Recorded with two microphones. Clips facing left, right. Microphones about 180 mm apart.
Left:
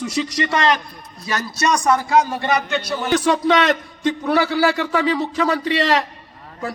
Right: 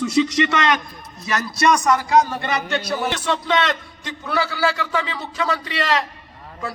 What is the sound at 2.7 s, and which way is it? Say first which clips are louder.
Speech: even; centre (ahead or behind).